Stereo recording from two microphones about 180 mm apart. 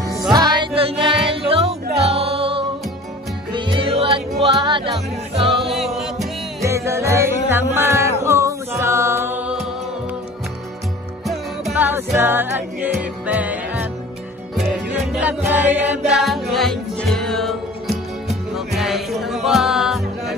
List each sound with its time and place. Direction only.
0.3 s music: 25° right (ahead or behind)
5.6 s music: centre (ahead or behind)
6.6 s music: 15° right (ahead or behind)
11.2 s music: 5° right (ahead or behind)
14.9 s music: 10° right (ahead or behind)